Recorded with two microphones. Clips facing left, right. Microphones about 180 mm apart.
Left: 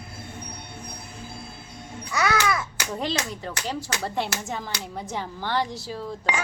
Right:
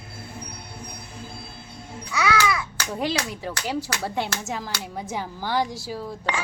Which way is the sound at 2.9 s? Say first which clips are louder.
Right 2 dB; 5° right (ahead or behind).